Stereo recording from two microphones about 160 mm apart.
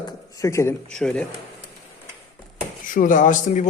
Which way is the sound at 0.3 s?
20° left (ahead or behind).